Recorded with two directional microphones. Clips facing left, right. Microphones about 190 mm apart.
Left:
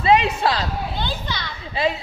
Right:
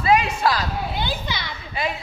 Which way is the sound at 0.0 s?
30° left (ahead or behind).